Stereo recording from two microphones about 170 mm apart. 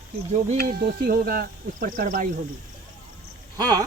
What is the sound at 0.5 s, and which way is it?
Speech, 60° right (ahead or behind).